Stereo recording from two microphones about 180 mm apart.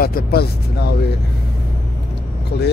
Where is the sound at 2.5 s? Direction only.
65° left (ahead or behind).